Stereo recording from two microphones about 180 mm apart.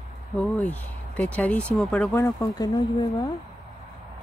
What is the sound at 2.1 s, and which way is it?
Speech, 15° left (ahead or behind).